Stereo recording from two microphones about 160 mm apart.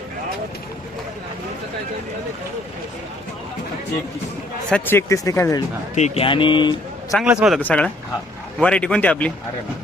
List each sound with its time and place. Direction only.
4.7 s speech: 15° left (ahead or behind)
5.9 s speech: 45° left (ahead or behind)
6.2 s speech: 30° left (ahead or behind)
7.1 s a man's voice: 5° right (ahead or behind)
7.6 s speech: 10° left (ahead or behind)